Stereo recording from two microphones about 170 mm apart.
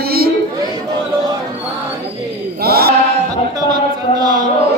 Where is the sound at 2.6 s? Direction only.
65° right (ahead or behind).